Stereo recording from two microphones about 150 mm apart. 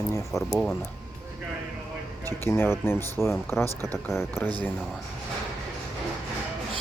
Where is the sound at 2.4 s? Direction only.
15° left (ahead or behind).